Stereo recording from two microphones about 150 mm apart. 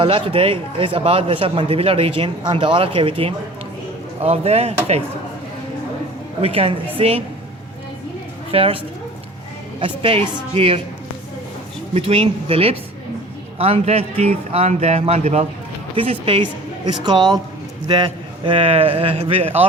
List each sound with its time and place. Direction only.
0.0 s speech: 35° right (ahead or behind)
6.4 s speech: 40° right (ahead or behind)
8.5 s speech: 40° right (ahead or behind)
9.8 s speech: 35° right (ahead or behind)
11.9 s a woman's voice: 40° right (ahead or behind)